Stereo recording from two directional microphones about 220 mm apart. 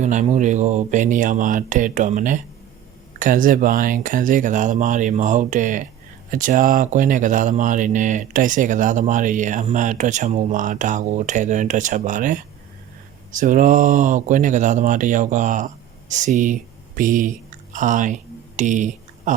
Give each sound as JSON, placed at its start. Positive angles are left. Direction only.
{"t": 0.0, "sound": "speech", "side_deg": -35}